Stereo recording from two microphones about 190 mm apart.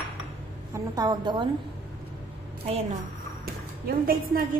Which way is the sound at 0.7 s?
20° right (ahead or behind).